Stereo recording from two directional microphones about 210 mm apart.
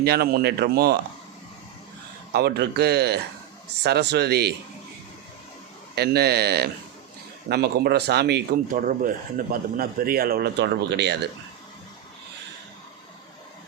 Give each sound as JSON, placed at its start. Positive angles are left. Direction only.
{"t": 0.0, "sound": "speech", "side_deg": -50}
{"t": 2.3, "sound": "speech", "side_deg": -50}
{"t": 5.9, "sound": "speech", "side_deg": -50}